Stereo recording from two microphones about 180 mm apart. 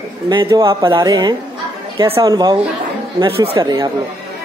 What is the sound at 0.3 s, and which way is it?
Speech, 25° right (ahead or behind).